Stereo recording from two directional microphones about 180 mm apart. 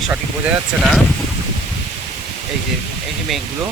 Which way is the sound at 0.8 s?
Centre (ahead or behind).